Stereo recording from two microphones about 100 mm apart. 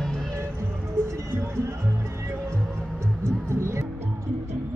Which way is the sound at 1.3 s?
25° right (ahead or behind).